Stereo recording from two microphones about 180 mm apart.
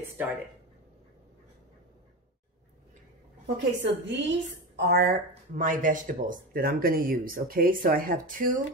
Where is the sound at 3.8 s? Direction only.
80° right.